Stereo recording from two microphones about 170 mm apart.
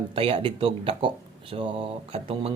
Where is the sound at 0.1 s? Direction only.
35° right (ahead or behind).